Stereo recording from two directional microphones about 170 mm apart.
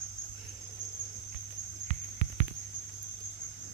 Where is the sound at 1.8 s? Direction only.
40° right (ahead or behind).